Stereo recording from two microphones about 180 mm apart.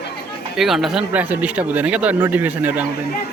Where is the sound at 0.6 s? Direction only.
Centre (ahead or behind).